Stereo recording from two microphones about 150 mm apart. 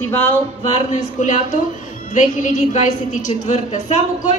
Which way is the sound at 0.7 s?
55° left (ahead or behind).